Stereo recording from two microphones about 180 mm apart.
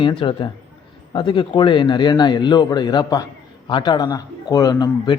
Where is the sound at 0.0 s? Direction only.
25° left (ahead or behind).